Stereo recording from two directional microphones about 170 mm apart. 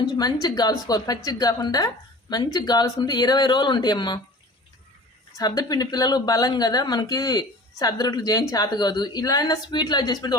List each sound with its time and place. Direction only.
0.0 s speech: 25° left (ahead or behind)
5.4 s speech: 25° left (ahead or behind)